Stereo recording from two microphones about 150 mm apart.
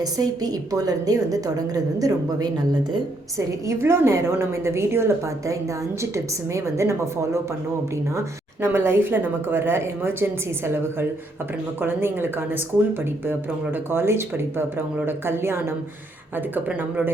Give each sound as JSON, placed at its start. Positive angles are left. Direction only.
{"t": 0.0, "sound": "a woman's voice", "side_deg": -25}
{"t": 8.6, "sound": "speech", "side_deg": -15}
{"t": 11.8, "sound": "speech", "side_deg": -15}